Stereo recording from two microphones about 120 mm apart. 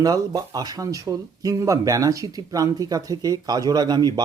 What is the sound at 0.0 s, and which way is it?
Speech, 30° right (ahead or behind).